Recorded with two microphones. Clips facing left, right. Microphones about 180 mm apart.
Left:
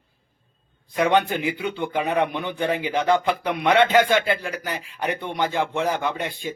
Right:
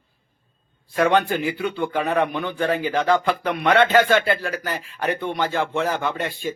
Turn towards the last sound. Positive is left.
turn(degrees=15)  # may be behind; listen again after turning